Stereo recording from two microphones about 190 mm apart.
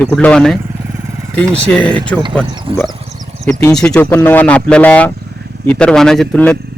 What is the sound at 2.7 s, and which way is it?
Speech, 30° right (ahead or behind).